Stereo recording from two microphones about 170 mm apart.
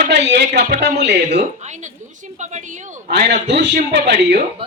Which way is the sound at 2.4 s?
45° right (ahead or behind).